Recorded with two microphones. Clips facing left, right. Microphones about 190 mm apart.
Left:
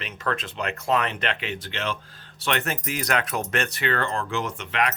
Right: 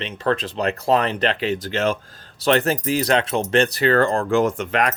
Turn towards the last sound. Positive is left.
turn(degrees=-45)  # may be behind; listen again after turning